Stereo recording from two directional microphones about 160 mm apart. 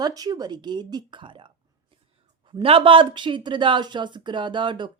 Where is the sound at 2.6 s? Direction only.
35° right (ahead or behind).